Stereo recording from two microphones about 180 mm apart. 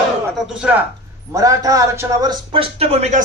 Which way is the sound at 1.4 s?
20° right (ahead or behind).